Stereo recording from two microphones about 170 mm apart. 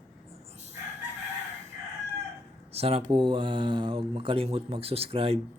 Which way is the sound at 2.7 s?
35° right (ahead or behind).